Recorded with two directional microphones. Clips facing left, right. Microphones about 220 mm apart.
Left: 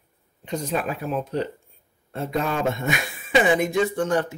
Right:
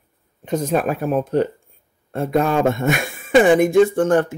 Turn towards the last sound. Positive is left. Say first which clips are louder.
# right 7 dB
turn(degrees=-50)  # may be behind; listen again after turning